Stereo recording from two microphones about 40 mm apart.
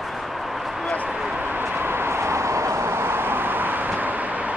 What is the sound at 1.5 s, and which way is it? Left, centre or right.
Vehicle, right.